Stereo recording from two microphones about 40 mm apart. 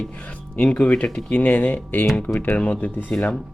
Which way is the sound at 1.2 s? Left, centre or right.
Left.